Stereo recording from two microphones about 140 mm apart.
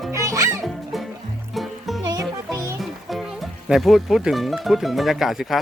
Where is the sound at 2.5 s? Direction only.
20° right (ahead or behind).